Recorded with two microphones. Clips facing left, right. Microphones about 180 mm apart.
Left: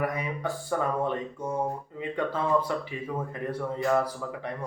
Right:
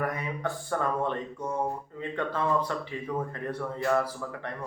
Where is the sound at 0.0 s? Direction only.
10° left (ahead or behind).